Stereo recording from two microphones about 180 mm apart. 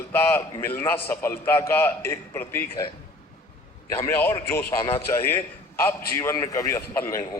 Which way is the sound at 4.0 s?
15° left (ahead or behind).